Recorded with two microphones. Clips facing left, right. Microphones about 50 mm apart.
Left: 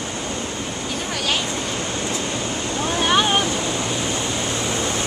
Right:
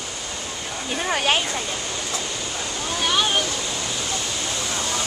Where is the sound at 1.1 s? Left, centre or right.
Right.